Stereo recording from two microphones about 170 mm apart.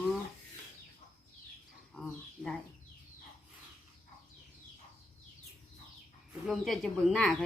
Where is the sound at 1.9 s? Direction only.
5° left (ahead or behind).